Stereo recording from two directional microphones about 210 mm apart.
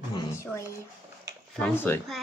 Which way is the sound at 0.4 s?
15° left (ahead or behind).